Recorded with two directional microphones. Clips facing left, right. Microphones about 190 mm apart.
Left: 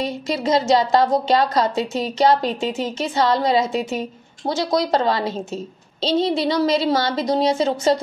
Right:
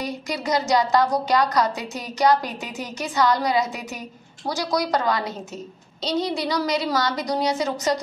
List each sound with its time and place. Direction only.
0.0 s a woman's voice: 25° left (ahead or behind)